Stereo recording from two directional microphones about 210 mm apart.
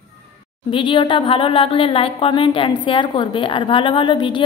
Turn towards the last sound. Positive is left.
turn(degrees=20)  # may be behind; listen again after turning